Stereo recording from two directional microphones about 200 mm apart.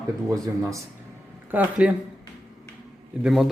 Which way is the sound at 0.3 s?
15° right (ahead or behind).